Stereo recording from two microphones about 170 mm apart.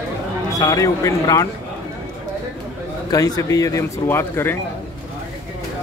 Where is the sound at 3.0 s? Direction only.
20° left (ahead or behind).